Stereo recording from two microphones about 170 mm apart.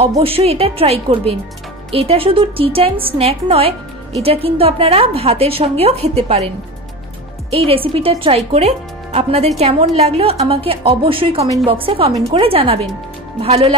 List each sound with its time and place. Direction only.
0.2 s a woman's voice: 35° right (ahead or behind)
7.5 s a woman's voice: 35° right (ahead or behind)